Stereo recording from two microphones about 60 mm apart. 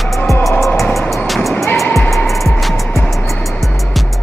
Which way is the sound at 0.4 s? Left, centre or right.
Centre.